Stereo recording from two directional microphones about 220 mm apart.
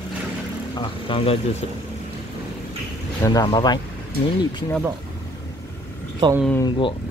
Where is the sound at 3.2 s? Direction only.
15° left (ahead or behind).